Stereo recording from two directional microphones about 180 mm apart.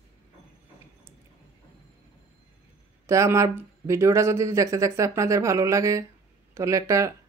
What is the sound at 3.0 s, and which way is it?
Speech, 15° right (ahead or behind).